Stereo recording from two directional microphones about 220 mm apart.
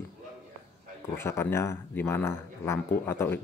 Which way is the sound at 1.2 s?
10° left (ahead or behind).